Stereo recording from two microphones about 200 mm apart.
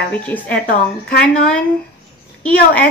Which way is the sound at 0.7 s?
45° left (ahead or behind).